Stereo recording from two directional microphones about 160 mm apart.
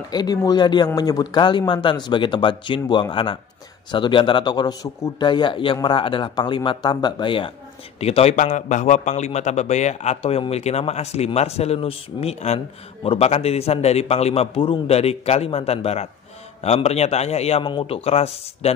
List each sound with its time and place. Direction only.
0.1 s a man's voice: 25° left (ahead or behind); by 18.7 s 40° left (ahead or behind)